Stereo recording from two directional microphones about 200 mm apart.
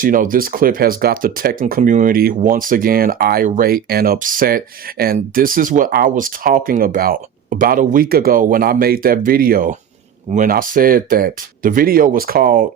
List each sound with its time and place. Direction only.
0.0 s speech: 45° right (ahead or behind)